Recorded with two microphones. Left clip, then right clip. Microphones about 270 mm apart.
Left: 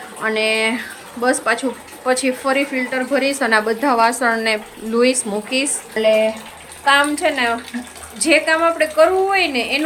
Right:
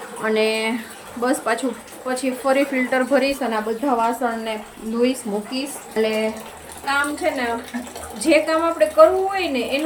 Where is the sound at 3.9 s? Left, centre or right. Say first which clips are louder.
Left 6 dB; left.